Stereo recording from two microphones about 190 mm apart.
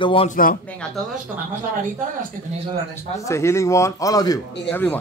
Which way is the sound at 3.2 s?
15° left (ahead or behind).